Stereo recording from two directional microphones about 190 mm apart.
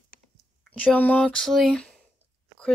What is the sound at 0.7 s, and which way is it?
Speech, 10° left (ahead or behind).